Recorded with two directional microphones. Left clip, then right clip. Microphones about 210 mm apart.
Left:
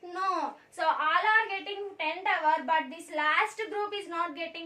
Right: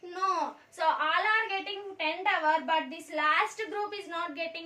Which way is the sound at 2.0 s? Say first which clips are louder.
Right 1 dB; 15° left (ahead or behind).